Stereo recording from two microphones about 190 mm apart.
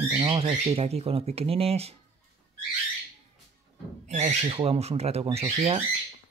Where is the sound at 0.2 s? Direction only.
30° right (ahead or behind).